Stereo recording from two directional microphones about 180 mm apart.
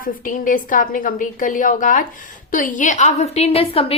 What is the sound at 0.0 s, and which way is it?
A woman's voice, 50° left (ahead or behind).